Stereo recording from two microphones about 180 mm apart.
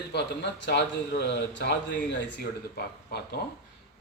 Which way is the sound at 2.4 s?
60° left (ahead or behind).